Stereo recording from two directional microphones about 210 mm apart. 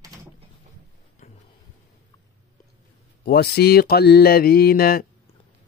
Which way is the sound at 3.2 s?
50° left (ahead or behind).